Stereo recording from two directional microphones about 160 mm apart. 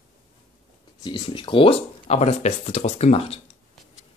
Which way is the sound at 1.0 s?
30° left (ahead or behind).